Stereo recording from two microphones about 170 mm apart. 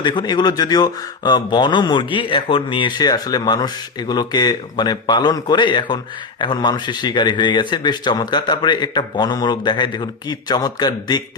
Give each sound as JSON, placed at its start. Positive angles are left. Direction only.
{"t": 0.0, "sound": "a man's voice", "side_deg": 25}